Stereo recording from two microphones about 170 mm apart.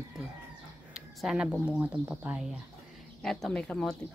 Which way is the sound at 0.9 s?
5° right (ahead or behind).